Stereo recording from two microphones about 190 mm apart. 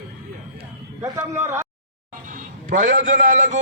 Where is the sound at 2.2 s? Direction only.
45° right (ahead or behind).